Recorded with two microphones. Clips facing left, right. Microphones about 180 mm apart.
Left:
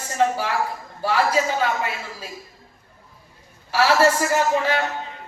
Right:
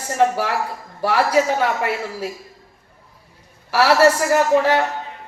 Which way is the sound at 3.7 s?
70° right (ahead or behind).